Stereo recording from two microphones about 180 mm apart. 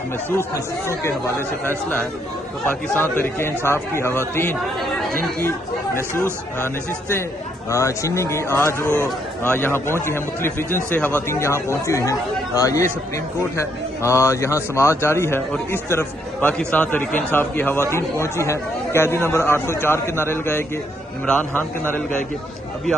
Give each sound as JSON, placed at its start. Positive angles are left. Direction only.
{"t": 0.3, "sound": "speech", "side_deg": 15}
{"t": 7.7, "sound": "speech", "side_deg": 15}